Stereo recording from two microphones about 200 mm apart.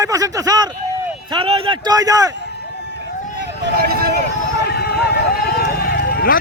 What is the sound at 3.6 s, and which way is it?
Speech, 50° right (ahead or behind).